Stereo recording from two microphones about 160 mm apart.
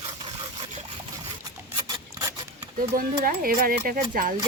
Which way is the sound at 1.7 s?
25° right (ahead or behind).